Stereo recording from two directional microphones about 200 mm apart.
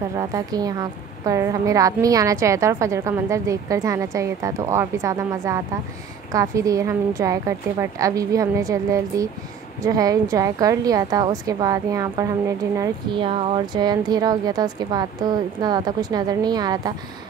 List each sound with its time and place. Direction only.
0.2 s a woman's voice: 20° right (ahead or behind)